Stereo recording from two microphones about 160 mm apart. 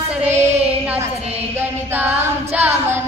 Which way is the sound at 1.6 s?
10° right (ahead or behind).